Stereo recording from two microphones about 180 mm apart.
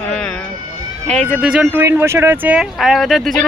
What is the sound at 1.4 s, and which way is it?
Speech, 5° right (ahead or behind).